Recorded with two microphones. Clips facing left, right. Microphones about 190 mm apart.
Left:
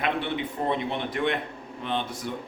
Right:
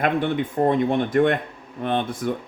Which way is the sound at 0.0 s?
45° right (ahead or behind).